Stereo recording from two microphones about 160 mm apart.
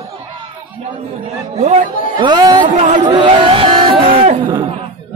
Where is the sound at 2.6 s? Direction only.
50° right (ahead or behind).